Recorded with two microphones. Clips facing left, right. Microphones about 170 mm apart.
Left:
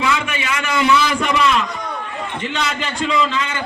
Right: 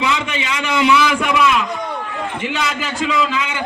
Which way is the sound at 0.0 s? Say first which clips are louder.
Even; 20° right (ahead or behind).